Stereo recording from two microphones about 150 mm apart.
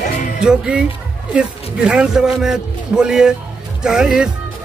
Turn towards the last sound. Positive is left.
turn(degrees=-5)  # may be behind; listen again after turning